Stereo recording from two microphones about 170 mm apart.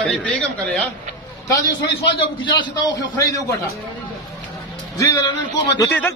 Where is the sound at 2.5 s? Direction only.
25° left (ahead or behind).